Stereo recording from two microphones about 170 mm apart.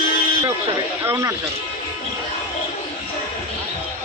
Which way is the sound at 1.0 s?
15° right (ahead or behind).